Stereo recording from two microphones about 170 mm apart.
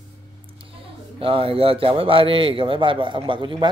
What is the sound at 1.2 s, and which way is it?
A man's voice, 30° right (ahead or behind).